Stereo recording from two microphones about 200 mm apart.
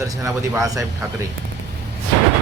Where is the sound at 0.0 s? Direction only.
15° right (ahead or behind).